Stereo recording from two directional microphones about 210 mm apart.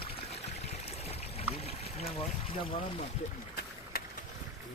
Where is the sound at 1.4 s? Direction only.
30° left (ahead or behind).